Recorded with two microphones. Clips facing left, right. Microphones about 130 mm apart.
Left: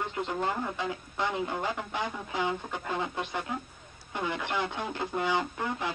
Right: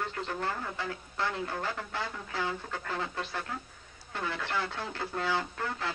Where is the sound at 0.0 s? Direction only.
20° left (ahead or behind).